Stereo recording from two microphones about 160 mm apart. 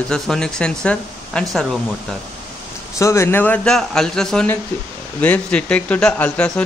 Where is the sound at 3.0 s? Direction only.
15° left (ahead or behind).